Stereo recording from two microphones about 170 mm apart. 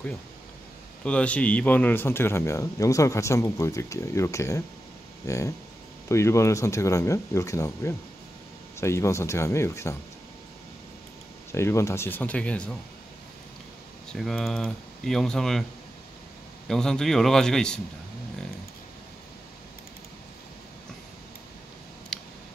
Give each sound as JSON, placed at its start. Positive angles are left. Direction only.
{"t": 1.0, "sound": "speech", "side_deg": 5}
{"t": 11.5, "sound": "speech", "side_deg": 15}
{"t": 14.1, "sound": "speech", "side_deg": 0}
{"t": 16.6, "sound": "speech", "side_deg": 5}
{"t": 22.1, "sound": "clicking", "side_deg": 5}